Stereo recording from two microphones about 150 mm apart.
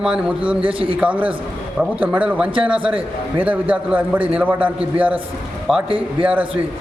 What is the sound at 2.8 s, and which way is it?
Speech, 35° right (ahead or behind).